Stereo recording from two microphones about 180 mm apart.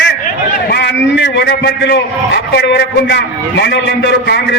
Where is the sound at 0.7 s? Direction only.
70° left (ahead or behind).